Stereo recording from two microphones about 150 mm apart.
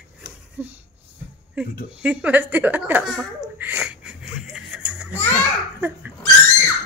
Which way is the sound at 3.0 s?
Centre (ahead or behind).